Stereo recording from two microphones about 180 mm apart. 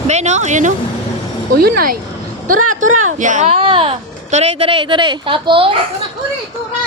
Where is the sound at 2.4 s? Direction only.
45° right (ahead or behind).